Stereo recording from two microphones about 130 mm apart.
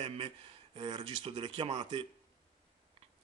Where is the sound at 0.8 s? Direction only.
40° right (ahead or behind).